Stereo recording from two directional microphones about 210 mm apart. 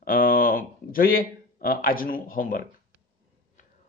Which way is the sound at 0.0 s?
40° left (ahead or behind).